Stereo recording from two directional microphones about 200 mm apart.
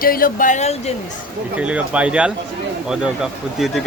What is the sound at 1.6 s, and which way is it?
Speech, 5° right (ahead or behind).